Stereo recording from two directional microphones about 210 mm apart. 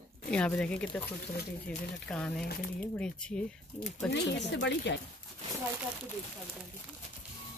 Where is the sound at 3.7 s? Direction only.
35° left (ahead or behind).